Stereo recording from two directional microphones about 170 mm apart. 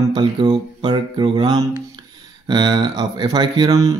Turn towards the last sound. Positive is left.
turn(degrees=-25)  # may be behind; listen again after turning